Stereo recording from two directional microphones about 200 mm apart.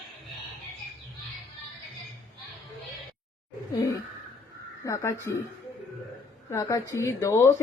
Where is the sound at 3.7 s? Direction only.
15° left (ahead or behind).